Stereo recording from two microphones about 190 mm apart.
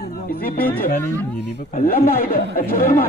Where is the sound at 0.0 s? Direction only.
50° left (ahead or behind).